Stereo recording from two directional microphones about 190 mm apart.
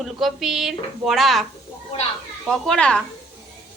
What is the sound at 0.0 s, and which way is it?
A woman's voice, centre (ahead or behind).